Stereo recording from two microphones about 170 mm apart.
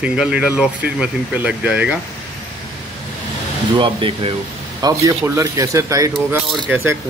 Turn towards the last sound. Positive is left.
turn(degrees=-15)  # may be behind; listen again after turning